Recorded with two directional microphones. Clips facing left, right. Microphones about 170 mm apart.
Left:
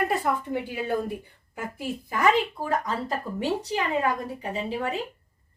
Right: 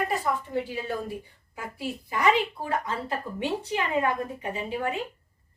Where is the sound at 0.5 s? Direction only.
60° left (ahead or behind).